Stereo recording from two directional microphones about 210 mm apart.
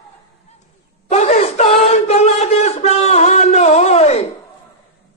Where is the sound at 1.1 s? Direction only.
30° left (ahead or behind).